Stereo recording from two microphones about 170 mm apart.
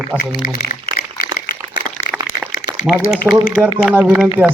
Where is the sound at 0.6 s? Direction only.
70° left (ahead or behind).